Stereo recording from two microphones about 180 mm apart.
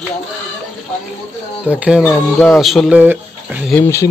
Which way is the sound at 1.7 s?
5° right (ahead or behind).